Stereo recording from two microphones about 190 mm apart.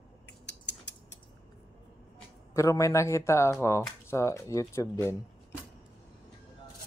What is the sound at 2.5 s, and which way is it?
Speech, 15° left (ahead or behind).